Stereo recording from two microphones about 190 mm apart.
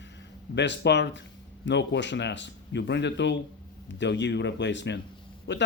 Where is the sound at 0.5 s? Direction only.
65° left (ahead or behind).